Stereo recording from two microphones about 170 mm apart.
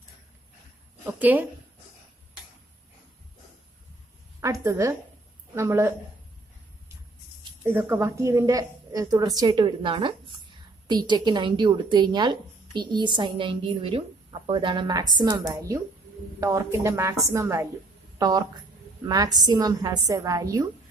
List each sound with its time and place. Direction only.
1.0 s speech: 10° right (ahead or behind)
4.4 s a woman's voice: 20° right (ahead or behind)
7.6 s a woman's voice: 10° right (ahead or behind)